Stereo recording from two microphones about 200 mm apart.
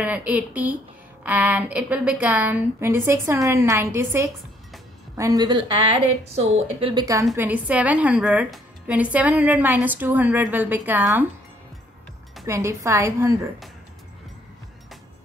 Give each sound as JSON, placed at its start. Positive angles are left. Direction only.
{"t": 0.0, "sound": "a woman's voice", "side_deg": -5}
{"t": 7.3, "sound": "a woman's voice", "side_deg": -10}
{"t": 12.4, "sound": "a woman's voice", "side_deg": -15}